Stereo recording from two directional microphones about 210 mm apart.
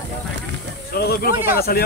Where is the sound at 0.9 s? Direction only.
45° left (ahead or behind).